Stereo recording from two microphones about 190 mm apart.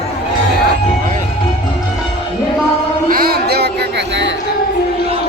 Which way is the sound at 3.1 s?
50° right (ahead or behind).